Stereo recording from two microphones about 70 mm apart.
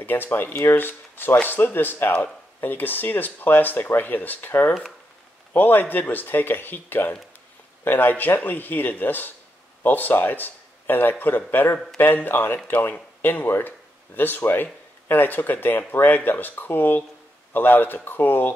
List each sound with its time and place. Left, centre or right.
0.0 s speech: left